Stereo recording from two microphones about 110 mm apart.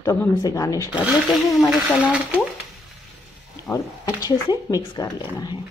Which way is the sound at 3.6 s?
30° left (ahead or behind).